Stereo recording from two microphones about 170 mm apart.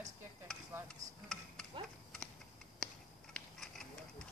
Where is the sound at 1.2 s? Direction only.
5° left (ahead or behind).